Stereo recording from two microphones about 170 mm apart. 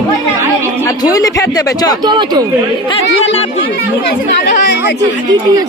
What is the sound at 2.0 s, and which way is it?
Speech, 25° right (ahead or behind).